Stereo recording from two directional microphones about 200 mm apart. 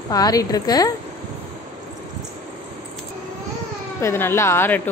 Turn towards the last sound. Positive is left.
turn(degrees=10)  # may be behind; listen again after turning